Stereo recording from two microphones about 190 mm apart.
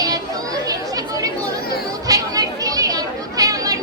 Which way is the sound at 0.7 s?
20° right (ahead or behind).